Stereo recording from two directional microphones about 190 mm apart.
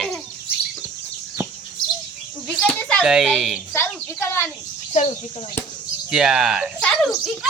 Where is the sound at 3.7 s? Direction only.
10° left (ahead or behind).